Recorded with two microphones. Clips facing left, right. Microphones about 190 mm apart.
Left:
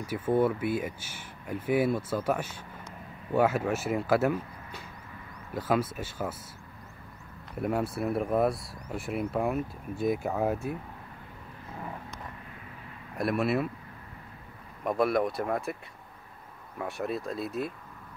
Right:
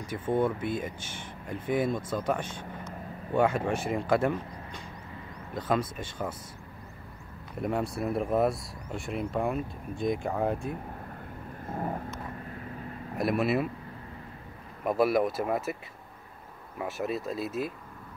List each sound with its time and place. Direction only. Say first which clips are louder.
0.0 s speech: left 2 dB; 10° left (ahead or behind)
7.6 s speech: left 1 dB; 5° left (ahead or behind)
11.6 s vehicle: right 7 dB; 45° right (ahead or behind)
13.2 s speech: right 1 dB; centre (ahead or behind)
14.9 s speech: right 1 dB; 5° right (ahead or behind)